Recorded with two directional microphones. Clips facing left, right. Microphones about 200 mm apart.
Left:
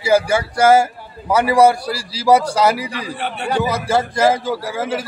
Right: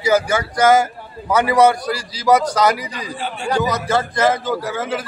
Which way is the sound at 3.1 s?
60° left (ahead or behind).